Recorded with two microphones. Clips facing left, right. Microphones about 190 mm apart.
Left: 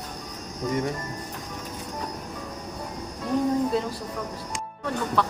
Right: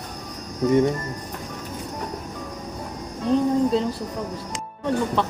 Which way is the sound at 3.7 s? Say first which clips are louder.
Right 4 dB; 25° right (ahead or behind).